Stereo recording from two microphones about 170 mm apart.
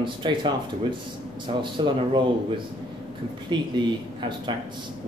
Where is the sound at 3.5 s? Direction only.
25° right (ahead or behind).